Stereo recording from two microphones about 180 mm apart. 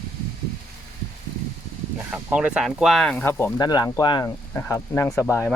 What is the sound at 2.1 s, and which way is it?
Speech, 10° right (ahead or behind).